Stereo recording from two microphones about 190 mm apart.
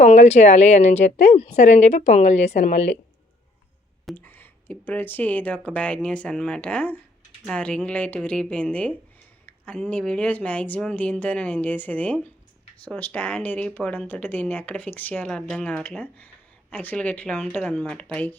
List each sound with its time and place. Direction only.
0.0 s a woman's voice: 35° left (ahead or behind)
4.0 s speech: 10° left (ahead or behind)
9.5 s a sound: 5° left (ahead or behind)
9.8 s speech: 5° left (ahead or behind)